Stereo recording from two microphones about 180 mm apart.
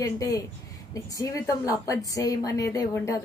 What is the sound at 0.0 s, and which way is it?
Speech, 20° left (ahead or behind).